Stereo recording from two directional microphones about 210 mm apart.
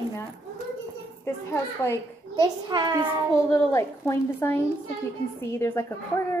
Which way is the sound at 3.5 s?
15° left (ahead or behind).